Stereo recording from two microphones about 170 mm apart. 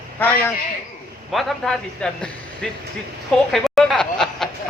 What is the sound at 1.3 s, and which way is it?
A woman's voice, centre (ahead or behind).